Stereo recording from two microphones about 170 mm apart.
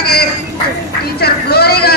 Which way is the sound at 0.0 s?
65° left (ahead or behind).